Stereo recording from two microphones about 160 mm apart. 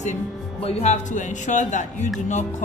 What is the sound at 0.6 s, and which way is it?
A woman's voice, 40° left (ahead or behind).